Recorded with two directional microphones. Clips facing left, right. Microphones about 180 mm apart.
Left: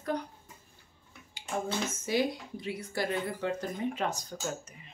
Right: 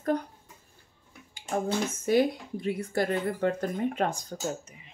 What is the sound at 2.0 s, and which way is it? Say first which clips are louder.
Speech: right 7 dB; 55° right (ahead or behind).